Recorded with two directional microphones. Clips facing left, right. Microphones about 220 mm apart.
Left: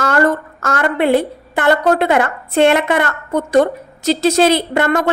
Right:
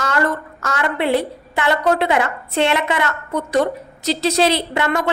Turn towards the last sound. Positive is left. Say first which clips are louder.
# left 4 dB
turn(degrees=45)  # may be behind; listen again after turning